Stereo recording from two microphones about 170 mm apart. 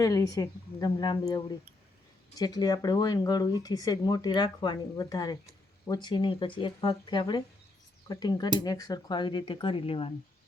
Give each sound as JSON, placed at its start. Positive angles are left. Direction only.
{"t": 0.0, "sound": "speech", "side_deg": 20}